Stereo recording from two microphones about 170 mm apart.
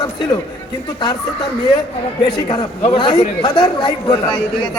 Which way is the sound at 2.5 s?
30° left (ahead or behind).